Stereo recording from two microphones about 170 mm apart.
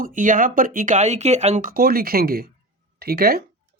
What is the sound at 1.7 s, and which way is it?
Speech, 60° right (ahead or behind).